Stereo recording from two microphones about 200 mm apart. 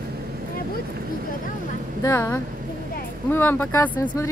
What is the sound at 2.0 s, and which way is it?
Speech, 10° left (ahead or behind).